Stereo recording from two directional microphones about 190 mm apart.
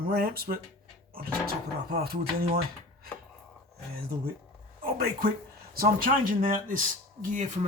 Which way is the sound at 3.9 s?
50° right (ahead or behind).